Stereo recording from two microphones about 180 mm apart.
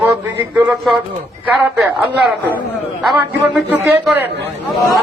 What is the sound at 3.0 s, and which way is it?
Speech, 5° right (ahead or behind).